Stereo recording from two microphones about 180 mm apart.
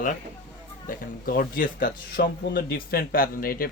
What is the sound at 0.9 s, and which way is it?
Speech, 50° left (ahead or behind).